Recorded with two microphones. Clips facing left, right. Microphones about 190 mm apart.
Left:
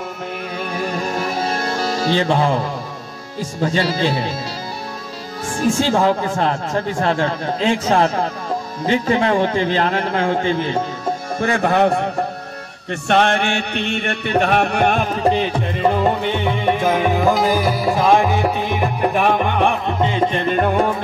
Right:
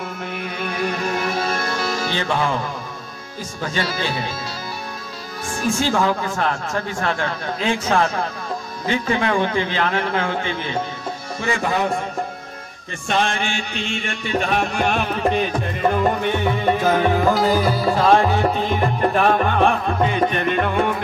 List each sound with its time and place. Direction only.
0.6 s music: 35° left (ahead or behind)
3.6 s a man's voice: 30° left (ahead or behind)
5.6 s a man's voice: 30° left (ahead or behind)
11.3 s music: 55° left (ahead or behind)
13.1 s music: 60° left (ahead or behind)
15.2 s a man's voice: 30° left (ahead or behind)
16.8 s music: 10° left (ahead or behind); by 20.5 s 25° left (ahead or behind)
20.5 s a man's voice: 40° left (ahead or behind)